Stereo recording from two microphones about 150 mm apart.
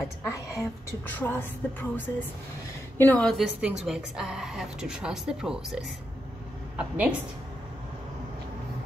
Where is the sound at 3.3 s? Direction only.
5° right (ahead or behind).